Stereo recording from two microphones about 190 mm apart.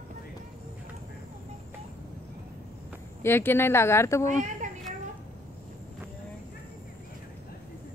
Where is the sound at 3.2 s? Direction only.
10° left (ahead or behind).